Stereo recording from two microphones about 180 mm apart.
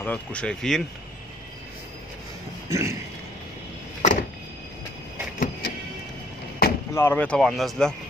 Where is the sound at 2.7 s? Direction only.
15° right (ahead or behind).